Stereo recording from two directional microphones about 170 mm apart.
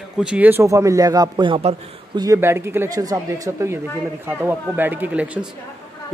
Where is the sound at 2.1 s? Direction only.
15° right (ahead or behind).